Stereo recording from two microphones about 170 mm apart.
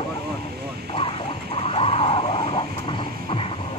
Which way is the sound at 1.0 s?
30° left (ahead or behind).